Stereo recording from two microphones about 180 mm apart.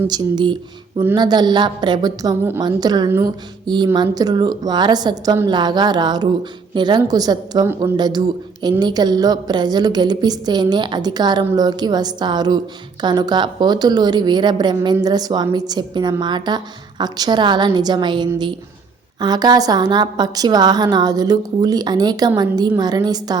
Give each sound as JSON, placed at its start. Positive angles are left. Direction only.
{"t": 0.1, "sound": "a woman's voice", "side_deg": -25}